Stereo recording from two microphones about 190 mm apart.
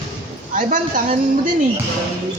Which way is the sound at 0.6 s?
45° right (ahead or behind).